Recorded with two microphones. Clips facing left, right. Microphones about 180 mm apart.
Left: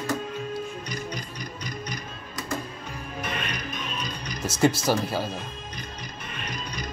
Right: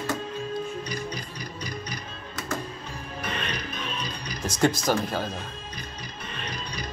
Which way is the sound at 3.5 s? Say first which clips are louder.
Even; 30° right (ahead or behind).